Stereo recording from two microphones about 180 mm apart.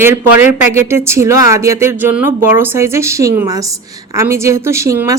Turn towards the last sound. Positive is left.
turn(degrees=-15)  # may be behind; listen again after turning